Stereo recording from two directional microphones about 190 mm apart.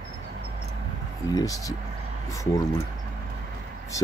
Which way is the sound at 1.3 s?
20° left (ahead or behind).